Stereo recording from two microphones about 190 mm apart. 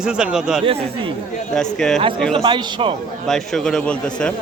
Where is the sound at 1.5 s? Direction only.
Centre (ahead or behind).